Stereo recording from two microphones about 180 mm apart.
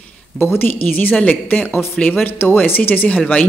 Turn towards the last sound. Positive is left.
turn(degrees=5)  # may be behind; listen again after turning